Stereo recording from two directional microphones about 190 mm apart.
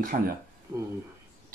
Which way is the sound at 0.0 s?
50° right (ahead or behind).